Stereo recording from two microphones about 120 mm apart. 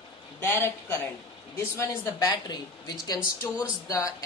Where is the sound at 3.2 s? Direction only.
10° right (ahead or behind).